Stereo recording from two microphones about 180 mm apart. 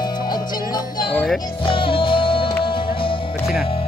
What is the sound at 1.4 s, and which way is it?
Music, 30° left (ahead or behind).